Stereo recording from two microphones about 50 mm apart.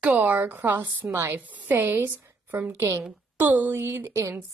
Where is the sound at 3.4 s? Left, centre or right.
Right.